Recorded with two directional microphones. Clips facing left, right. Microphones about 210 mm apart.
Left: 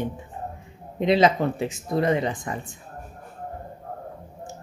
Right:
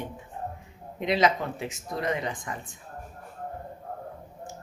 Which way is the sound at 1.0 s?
30° left (ahead or behind).